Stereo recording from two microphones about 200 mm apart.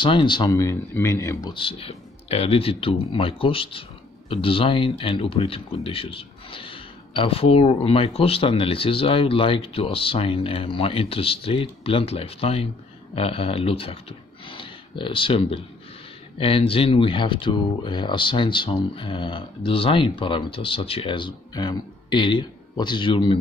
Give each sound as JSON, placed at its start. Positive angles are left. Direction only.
{"t": 0.0, "sound": "speech", "side_deg": 25}
{"t": 1.5, "sound": "speech", "side_deg": 25}